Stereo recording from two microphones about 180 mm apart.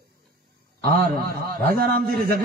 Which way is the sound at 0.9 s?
55° right (ahead or behind).